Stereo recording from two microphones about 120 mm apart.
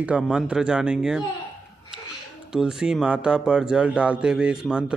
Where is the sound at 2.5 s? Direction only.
5° right (ahead or behind).